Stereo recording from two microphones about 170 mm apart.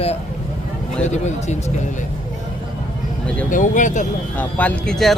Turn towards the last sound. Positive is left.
turn(degrees=5)  # may be behind; listen again after turning